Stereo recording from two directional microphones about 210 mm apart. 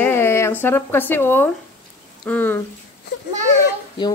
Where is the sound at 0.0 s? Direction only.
10° left (ahead or behind).